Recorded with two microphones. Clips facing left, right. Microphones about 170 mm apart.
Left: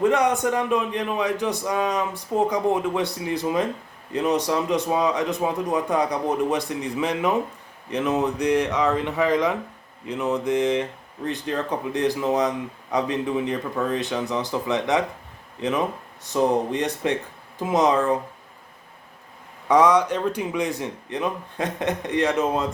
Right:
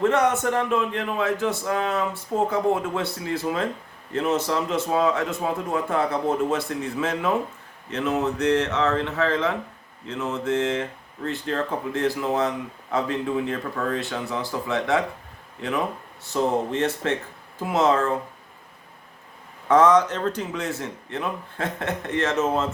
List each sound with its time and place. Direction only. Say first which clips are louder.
0.0 s a man's voice: left 1 dB; 15° left (ahead or behind)
19.6 s a man's voice: even; 15° left (ahead or behind)